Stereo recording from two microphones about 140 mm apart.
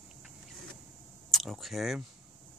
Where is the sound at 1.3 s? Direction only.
Centre (ahead or behind).